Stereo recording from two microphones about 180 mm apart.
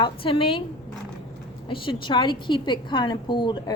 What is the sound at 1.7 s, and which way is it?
A woman's voice, 30° left (ahead or behind).